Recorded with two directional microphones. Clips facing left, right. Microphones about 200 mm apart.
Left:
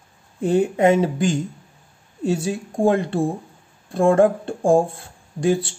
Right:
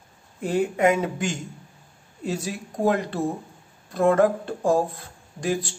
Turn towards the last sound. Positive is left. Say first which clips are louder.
# left 6 dB
turn(degrees=30)  # may be behind; listen again after turning